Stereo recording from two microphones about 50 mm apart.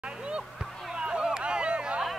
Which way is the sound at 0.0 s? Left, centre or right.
Centre.